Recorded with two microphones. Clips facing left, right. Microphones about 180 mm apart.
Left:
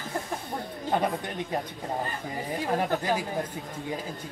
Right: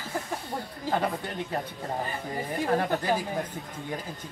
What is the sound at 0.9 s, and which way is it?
Speech, 20° left (ahead or behind).